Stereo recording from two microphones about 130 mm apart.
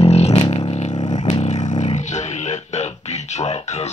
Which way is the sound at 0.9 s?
35° left (ahead or behind).